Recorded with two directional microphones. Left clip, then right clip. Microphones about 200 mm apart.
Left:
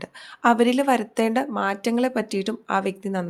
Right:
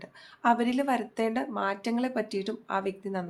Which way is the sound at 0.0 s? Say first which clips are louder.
Left 6 dB; 40° left (ahead or behind).